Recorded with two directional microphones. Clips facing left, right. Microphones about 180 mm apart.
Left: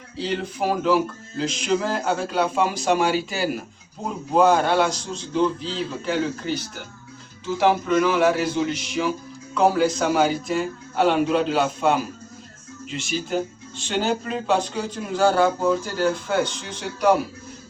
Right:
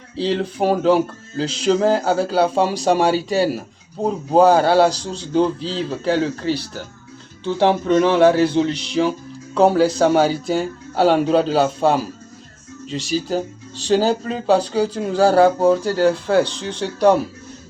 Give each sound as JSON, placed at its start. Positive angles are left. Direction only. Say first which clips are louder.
{"t": 0.2, "sound": "speech", "louder": "right 6 dB", "side_deg": -30}